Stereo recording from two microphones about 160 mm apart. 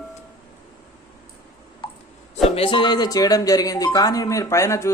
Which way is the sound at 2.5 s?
35° left (ahead or behind).